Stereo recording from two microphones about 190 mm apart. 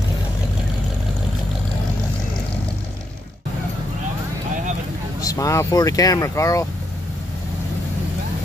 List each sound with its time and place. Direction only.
5.2 s speech: 20° left (ahead or behind)